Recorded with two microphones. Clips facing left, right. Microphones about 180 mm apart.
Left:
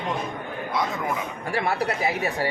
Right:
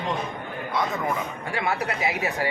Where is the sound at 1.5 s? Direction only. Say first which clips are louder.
Left 3 dB; 30° left (ahead or behind).